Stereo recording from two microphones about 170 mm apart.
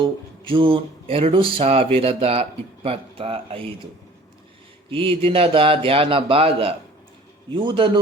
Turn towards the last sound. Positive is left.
turn(degrees=-30)  # may be behind; listen again after turning